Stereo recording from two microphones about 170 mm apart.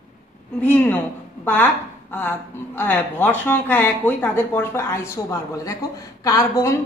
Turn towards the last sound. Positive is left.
turn(degrees=15)  # may be behind; listen again after turning